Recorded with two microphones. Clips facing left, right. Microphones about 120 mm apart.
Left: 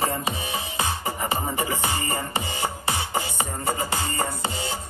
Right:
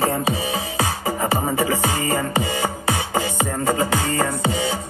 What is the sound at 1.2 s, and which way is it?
Music, 90° right.